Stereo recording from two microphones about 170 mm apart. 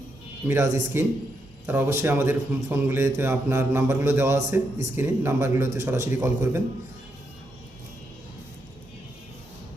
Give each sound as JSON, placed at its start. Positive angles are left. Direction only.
{"t": 0.4, "sound": "a man's voice", "side_deg": -15}